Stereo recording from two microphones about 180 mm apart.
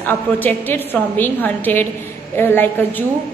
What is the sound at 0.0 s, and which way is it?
A woman's voice, 10° left (ahead or behind).